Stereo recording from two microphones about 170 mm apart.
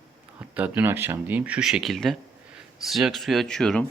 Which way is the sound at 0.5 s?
10° right (ahead or behind).